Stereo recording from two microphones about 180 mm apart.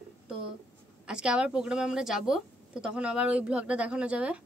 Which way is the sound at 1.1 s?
5° right (ahead or behind).